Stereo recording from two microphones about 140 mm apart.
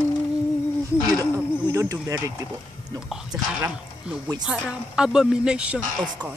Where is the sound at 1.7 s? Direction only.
25° right (ahead or behind).